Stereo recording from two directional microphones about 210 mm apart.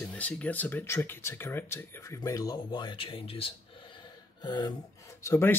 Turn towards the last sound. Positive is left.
turn(degrees=10)  # may be behind; listen again after turning